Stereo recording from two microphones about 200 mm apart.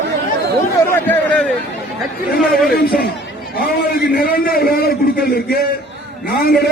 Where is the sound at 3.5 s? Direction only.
50° left (ahead or behind).